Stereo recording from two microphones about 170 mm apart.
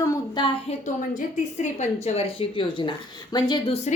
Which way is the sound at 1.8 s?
40° left (ahead or behind).